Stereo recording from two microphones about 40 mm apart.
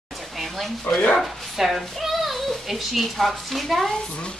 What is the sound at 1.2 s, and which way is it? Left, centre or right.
Speech, centre.